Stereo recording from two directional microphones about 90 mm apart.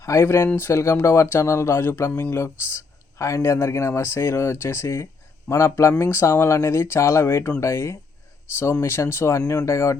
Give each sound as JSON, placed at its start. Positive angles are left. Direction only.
{"t": 0.0, "sound": "speech", "side_deg": 35}